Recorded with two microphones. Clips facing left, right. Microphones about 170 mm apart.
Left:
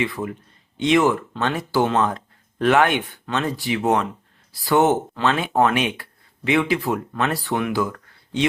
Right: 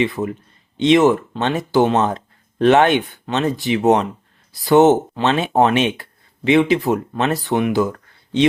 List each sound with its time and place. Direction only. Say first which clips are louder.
0.0 s speech: right 5 dB; 20° right (ahead or behind)